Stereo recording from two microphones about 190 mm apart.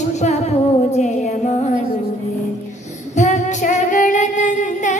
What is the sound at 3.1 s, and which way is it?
Female singing, 40° left (ahead or behind).